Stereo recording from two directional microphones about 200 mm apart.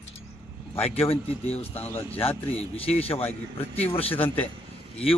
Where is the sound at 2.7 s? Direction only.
30° left (ahead or behind).